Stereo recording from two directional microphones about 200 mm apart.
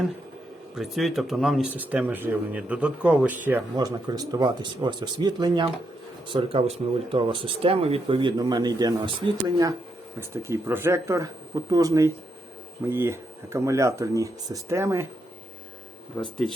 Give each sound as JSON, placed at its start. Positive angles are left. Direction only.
{"t": 0.8, "sound": "speech", "side_deg": 0}
{"t": 3.8, "sound": "speech", "side_deg": -20}
{"t": 16.1, "sound": "speech", "side_deg": 5}